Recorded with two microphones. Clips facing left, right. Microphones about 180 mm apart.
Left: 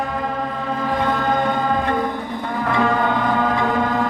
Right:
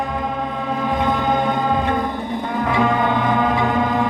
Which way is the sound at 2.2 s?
20° right (ahead or behind).